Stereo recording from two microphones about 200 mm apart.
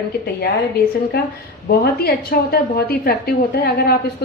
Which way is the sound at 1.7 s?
50° left (ahead or behind).